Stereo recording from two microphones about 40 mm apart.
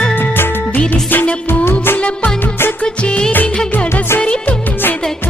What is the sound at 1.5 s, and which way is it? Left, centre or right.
Music of bollywood, left.